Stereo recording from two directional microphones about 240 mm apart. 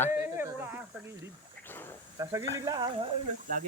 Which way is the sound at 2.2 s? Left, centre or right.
Centre.